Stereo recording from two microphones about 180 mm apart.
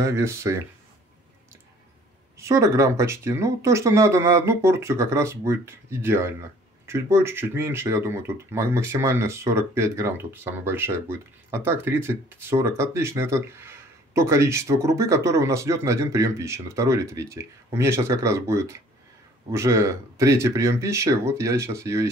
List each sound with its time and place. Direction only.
0.0 s speech: 15° right (ahead or behind)
2.3 s speech: 15° right (ahead or behind)